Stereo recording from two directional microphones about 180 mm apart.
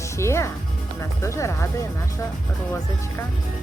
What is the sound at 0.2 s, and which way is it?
Music, 15° left (ahead or behind).